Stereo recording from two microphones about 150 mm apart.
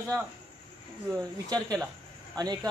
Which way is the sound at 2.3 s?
25° right (ahead or behind).